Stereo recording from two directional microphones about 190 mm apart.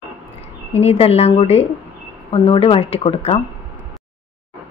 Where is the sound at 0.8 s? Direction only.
30° left (ahead or behind).